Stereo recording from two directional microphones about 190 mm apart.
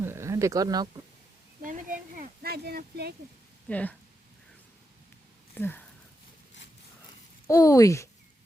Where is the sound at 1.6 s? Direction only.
45° right (ahead or behind).